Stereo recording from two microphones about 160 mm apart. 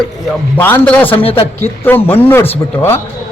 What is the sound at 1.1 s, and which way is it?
Speech, 35° left (ahead or behind).